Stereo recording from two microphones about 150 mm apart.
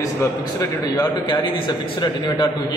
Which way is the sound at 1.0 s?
30° left (ahead or behind).